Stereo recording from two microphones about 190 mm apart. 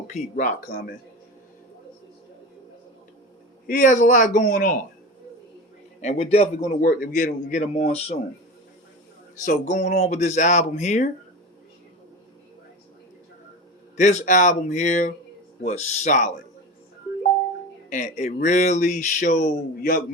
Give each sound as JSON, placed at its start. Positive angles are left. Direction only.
{"t": 0.1, "sound": "a man's voice", "side_deg": 45}
{"t": 3.7, "sound": "a man's voice", "side_deg": 45}
{"t": 6.0, "sound": "speech", "side_deg": 35}
{"t": 9.4, "sound": "speech", "side_deg": 40}
{"t": 13.9, "sound": "speech", "side_deg": 40}
{"t": 17.8, "sound": "speech", "side_deg": 40}